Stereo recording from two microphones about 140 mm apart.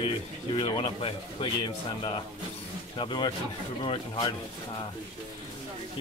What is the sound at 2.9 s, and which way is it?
Speech, 35° left (ahead or behind).